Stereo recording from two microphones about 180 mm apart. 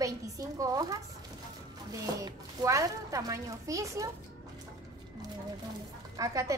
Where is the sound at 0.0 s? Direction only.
20° right (ahead or behind).